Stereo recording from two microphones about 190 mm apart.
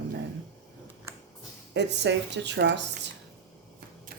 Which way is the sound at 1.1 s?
15° right (ahead or behind).